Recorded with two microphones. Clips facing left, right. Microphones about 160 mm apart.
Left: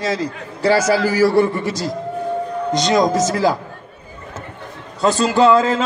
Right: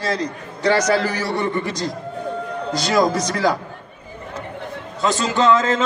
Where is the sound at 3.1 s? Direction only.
25° left (ahead or behind).